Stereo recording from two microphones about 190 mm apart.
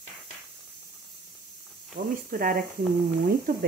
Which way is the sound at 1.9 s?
50° right (ahead or behind).